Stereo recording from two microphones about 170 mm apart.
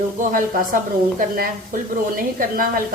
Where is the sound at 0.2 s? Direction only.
55° right (ahead or behind).